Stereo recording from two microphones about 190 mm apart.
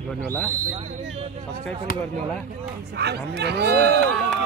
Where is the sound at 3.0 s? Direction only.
60° right (ahead or behind).